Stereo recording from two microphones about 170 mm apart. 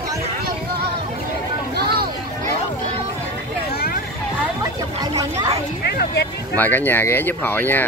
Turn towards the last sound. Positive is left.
turn(degrees=10)  # may be behind; listen again after turning